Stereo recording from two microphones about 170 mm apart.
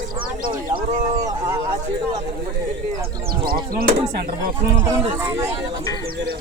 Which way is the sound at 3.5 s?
60° right (ahead or behind).